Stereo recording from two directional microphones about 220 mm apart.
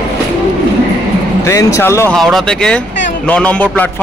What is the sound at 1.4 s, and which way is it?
A man's voice, 15° left (ahead or behind).